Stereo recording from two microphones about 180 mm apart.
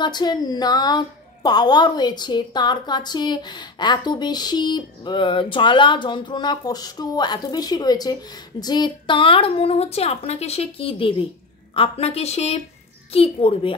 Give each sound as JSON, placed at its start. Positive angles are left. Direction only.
{"t": 0.0, "sound": "a woman's voice", "side_deg": 25}